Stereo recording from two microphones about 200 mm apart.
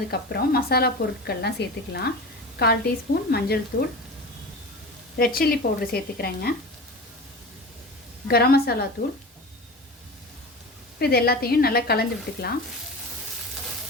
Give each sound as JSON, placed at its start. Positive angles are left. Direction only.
{"t": 0.1, "sound": "speech", "side_deg": 50}
{"t": 5.1, "sound": "speech", "side_deg": 50}
{"t": 8.3, "sound": "speech", "side_deg": 50}
{"t": 11.0, "sound": "speech", "side_deg": 50}